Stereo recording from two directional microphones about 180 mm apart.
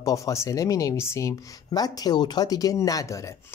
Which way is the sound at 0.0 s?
15° left (ahead or behind).